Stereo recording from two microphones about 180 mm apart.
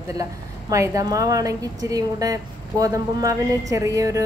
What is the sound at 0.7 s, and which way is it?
A woman's voice, 20° right (ahead or behind).